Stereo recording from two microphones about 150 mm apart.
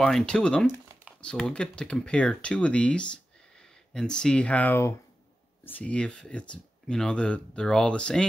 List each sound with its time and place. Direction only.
0.0 s speech: 5° left (ahead or behind)